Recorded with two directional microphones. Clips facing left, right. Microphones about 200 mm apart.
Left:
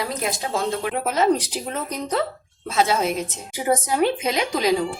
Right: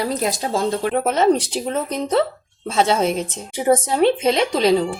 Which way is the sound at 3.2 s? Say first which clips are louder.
Right 5 dB; 30° right (ahead or behind).